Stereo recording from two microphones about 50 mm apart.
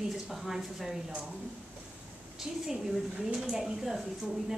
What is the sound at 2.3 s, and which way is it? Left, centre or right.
A woman's voice, centre.